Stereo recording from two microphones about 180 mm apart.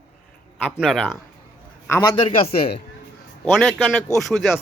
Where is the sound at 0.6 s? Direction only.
Centre (ahead or behind).